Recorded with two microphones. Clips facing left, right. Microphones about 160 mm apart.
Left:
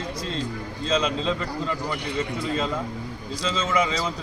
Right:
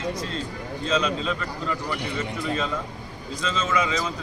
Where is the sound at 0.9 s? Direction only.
25° left (ahead or behind).